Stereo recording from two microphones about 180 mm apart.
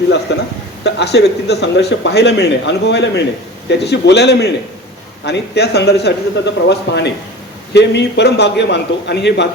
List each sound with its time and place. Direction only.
0.3 s speech: 70° left (ahead or behind)